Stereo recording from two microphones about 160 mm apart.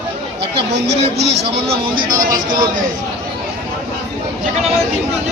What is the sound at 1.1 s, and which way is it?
Speech, 90° right.